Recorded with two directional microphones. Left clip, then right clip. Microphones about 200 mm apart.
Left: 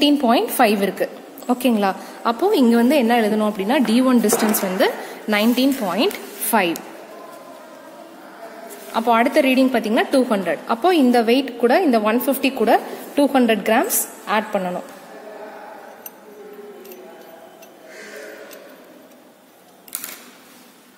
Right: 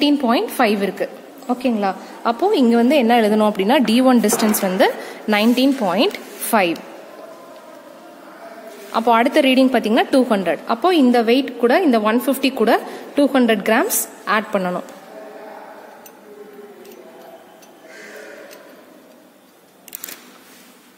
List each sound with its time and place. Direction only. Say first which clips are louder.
0.0 s a woman's voice: left 1 dB; centre (ahead or behind)
2.2 s a woman's voice: right 1 dB; 5° right (ahead or behind)
3.2 s a woman's voice: right 4 dB; 25° right (ahead or behind)
8.9 s a woman's voice: right 1 dB; 20° right (ahead or behind)